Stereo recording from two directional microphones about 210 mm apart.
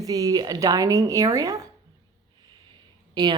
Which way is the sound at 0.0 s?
15° right (ahead or behind).